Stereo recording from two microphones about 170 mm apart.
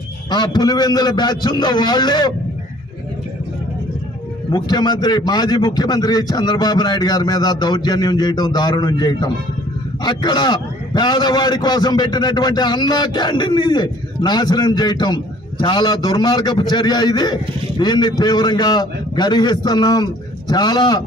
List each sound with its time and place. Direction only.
0.3 s a man's voice: 25° left (ahead or behind)
4.5 s a man's voice: 25° left (ahead or behind)